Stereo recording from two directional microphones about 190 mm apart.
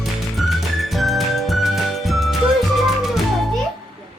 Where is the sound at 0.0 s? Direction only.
Centre (ahead or behind).